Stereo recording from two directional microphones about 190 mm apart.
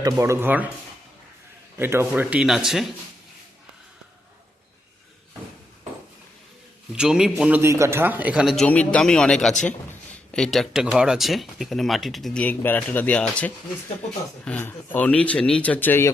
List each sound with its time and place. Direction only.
0.0 s speech: 15° right (ahead or behind)
1.8 s speech: 10° right (ahead or behind)
6.9 s speech: 5° right (ahead or behind); by 16.1 s 10° left (ahead or behind)